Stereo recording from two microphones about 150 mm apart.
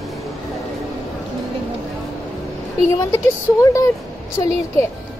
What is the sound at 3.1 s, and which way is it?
Speech, 20° left (ahead or behind).